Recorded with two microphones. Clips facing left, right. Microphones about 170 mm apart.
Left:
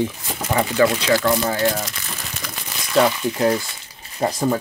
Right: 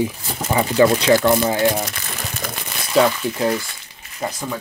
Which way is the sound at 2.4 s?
55° right (ahead or behind).